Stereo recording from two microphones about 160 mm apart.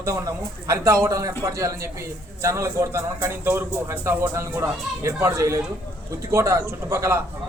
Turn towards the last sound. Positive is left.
turn(degrees=-15)  # may be behind; listen again after turning